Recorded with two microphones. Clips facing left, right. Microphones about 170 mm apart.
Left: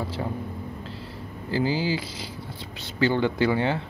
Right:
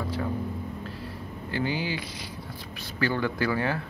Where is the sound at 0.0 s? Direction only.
30° left (ahead or behind).